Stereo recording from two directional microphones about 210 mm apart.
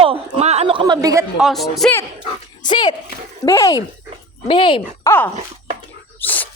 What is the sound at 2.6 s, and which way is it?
Speech, 20° left (ahead or behind).